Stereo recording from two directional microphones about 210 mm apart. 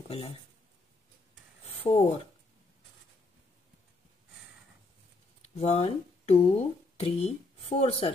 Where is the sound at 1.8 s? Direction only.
30° left (ahead or behind).